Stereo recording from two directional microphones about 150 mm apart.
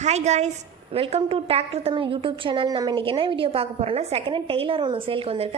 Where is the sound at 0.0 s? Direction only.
50° right (ahead or behind).